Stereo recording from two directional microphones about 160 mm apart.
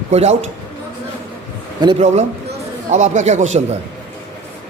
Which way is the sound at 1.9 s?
45° right (ahead or behind).